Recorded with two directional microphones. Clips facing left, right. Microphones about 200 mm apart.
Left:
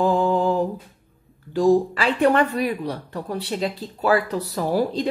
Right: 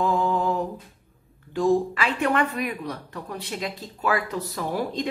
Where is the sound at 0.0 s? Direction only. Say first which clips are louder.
Left 4 dB; 30° left (ahead or behind).